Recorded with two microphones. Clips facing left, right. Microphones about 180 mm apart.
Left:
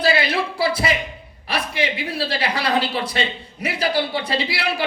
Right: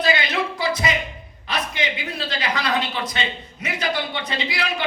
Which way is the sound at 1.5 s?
30° left (ahead or behind).